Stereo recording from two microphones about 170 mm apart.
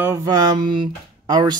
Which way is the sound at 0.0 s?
15° right (ahead or behind).